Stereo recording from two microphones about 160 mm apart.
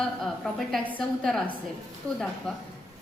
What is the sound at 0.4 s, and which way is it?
A woman's voice, centre (ahead or behind).